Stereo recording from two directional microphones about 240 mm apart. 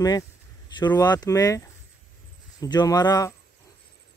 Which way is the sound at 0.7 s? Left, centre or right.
Centre.